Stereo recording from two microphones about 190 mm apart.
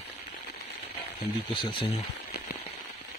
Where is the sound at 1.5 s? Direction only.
25° left (ahead or behind).